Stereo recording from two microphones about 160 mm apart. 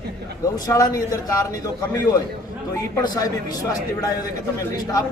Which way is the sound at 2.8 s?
25° left (ahead or behind).